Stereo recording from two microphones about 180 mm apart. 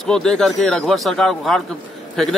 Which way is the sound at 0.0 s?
5° left (ahead or behind).